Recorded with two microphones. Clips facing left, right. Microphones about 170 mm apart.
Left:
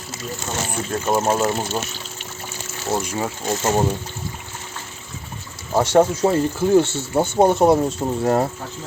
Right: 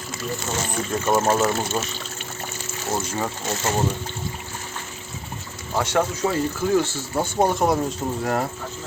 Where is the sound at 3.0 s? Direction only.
15° left (ahead or behind).